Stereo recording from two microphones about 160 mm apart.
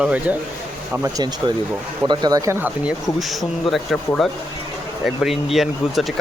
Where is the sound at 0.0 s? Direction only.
10° right (ahead or behind).